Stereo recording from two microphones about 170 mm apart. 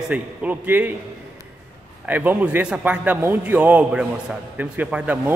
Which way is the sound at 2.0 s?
10° right (ahead or behind).